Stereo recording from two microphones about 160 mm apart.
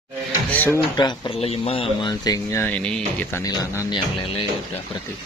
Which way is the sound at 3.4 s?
25° left (ahead or behind).